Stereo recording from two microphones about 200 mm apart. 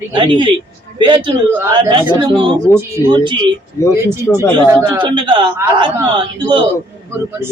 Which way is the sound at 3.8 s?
15° left (ahead or behind).